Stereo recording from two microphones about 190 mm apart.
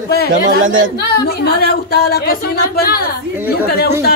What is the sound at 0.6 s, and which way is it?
Speech, 90° right.